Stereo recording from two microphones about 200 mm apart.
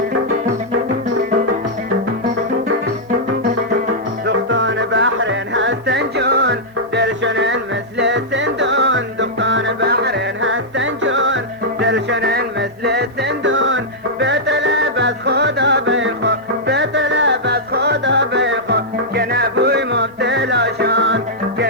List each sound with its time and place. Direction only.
4.3 s music: 70° right (ahead or behind)